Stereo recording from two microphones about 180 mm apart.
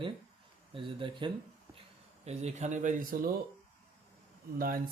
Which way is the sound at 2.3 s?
40° right (ahead or behind).